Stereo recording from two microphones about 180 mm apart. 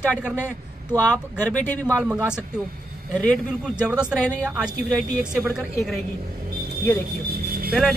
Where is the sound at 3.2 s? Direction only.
5° left (ahead or behind).